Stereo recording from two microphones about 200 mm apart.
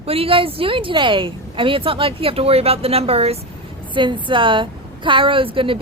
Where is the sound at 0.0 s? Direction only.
30° right (ahead or behind).